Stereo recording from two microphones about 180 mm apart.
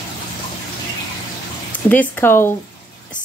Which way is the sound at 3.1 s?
45° left (ahead or behind).